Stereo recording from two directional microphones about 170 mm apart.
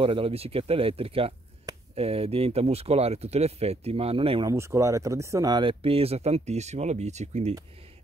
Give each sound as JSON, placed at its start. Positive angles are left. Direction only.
{"t": 0.0, "sound": "speech", "side_deg": -30}
{"t": 4.5, "sound": "speech", "side_deg": -15}